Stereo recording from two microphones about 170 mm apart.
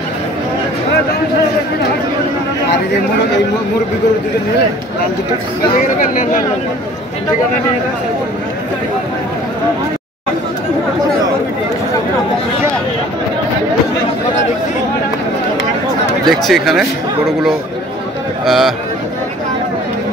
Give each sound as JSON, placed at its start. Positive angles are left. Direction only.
{"t": 5.8, "sound": "speech", "side_deg": 50}
{"t": 16.3, "sound": "speech", "side_deg": 0}
{"t": 18.4, "sound": "a man's voice", "side_deg": 0}